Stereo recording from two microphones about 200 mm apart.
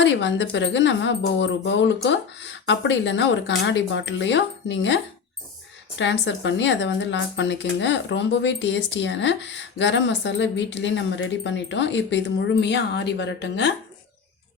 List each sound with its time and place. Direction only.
0.0 s speech: 65° left (ahead or behind)
6.0 s speech: 65° left (ahead or behind)